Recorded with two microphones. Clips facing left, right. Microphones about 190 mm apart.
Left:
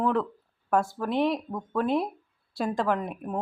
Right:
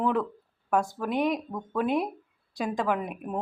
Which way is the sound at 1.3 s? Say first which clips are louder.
Left 1 dB; centre (ahead or behind).